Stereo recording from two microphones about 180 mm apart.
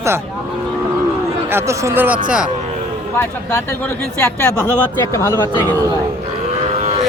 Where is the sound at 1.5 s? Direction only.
15° right (ahead or behind).